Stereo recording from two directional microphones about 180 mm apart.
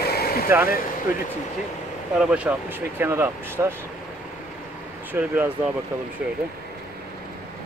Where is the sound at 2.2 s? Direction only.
10° right (ahead or behind).